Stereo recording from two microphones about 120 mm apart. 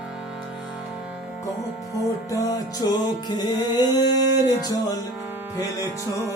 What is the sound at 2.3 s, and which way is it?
Music, 30° left (ahead or behind).